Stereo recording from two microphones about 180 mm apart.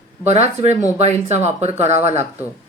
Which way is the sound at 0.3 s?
35° right (ahead or behind).